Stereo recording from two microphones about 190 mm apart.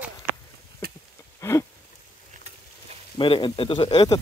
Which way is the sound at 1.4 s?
15° left (ahead or behind).